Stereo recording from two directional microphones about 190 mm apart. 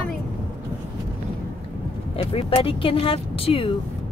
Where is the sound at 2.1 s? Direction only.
30° left (ahead or behind).